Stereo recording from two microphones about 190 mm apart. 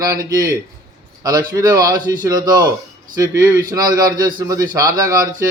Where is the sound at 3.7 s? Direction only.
20° right (ahead or behind).